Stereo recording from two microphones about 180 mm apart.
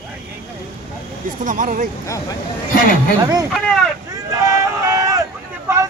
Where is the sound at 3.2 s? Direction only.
20° right (ahead or behind).